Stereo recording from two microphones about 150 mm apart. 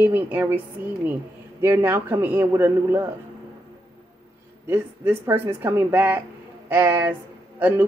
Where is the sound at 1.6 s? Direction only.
15° right (ahead or behind).